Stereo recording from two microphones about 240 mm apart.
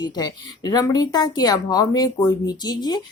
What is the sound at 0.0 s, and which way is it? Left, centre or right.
A woman's voice, centre.